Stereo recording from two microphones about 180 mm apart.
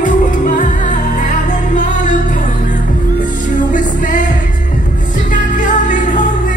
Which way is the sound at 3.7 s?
45° left (ahead or behind).